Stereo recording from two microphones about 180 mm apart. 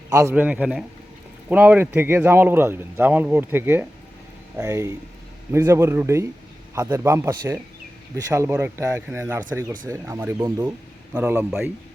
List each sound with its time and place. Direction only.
0.1 s speech: 15° right (ahead or behind)